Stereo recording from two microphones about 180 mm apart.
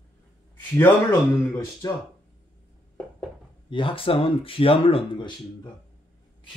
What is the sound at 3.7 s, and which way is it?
Speech, 30° left (ahead or behind).